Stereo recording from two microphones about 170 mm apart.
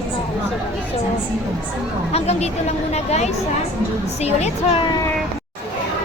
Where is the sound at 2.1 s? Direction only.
40° left (ahead or behind).